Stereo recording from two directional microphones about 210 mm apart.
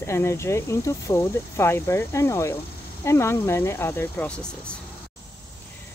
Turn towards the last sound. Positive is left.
turn(degrees=5)  # may be behind; listen again after turning